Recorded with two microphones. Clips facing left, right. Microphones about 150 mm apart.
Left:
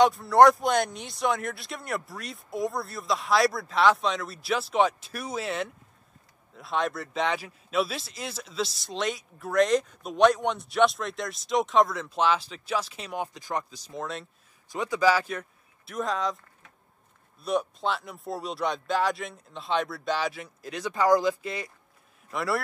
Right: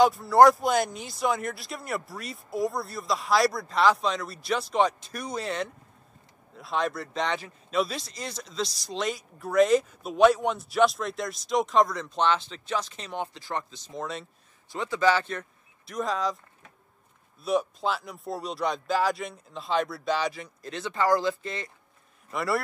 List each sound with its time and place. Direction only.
0.0 s speech: centre (ahead or behind); by 13.7 s 15° left (ahead or behind)
13.9 s speech: centre (ahead or behind)
14.7 s a man's voice: 15° left (ahead or behind); by 16.3 s centre (ahead or behind)
17.4 s speech: centre (ahead or behind)